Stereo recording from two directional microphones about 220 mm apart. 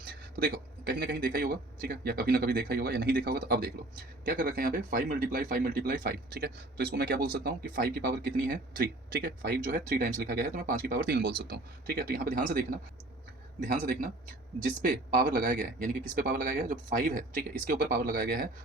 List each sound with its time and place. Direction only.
0.0 s a man's voice: 45° right (ahead or behind)